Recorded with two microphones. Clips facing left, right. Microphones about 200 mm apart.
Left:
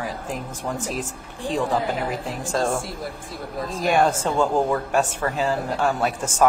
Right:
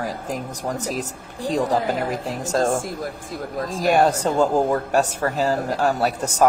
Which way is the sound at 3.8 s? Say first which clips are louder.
Right 2 dB; 40° right (ahead or behind).